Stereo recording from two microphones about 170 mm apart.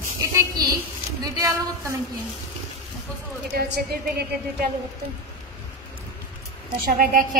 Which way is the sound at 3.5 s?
65° right (ahead or behind).